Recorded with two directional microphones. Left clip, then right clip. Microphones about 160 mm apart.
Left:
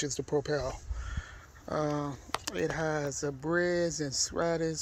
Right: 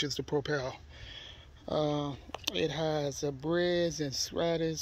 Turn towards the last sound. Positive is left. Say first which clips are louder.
# left 1 dB
turn(degrees=5)  # may be behind; listen again after turning